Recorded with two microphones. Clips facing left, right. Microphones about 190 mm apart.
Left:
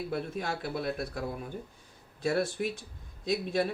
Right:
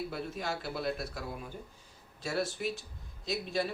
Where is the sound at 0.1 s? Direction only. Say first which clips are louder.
Left 3 dB; 55° left (ahead or behind).